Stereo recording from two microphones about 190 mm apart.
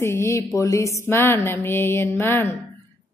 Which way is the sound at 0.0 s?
15° left (ahead or behind).